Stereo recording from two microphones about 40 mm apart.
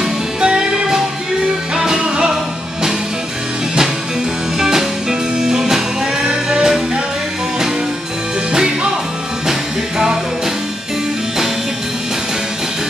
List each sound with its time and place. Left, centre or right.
0.4 s music: right
2.0 s music: right
4.6 s music: centre
9.5 s music: centre